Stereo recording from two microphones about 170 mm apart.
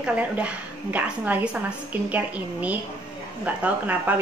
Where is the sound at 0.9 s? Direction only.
10° right (ahead or behind).